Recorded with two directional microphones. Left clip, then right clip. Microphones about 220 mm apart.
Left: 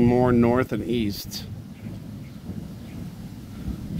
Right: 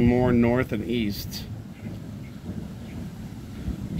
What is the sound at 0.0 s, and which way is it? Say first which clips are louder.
Speech: left 2 dB; 20° left (ahead or behind).